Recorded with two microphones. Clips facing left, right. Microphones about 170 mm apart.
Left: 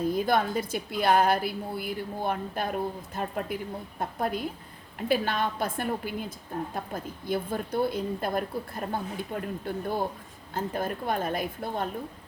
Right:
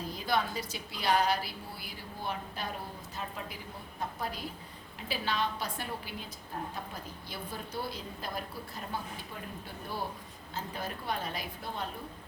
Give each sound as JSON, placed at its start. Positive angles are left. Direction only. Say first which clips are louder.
{"t": 0.0, "sound": "a woman's voice", "louder": "left 7 dB", "side_deg": 50}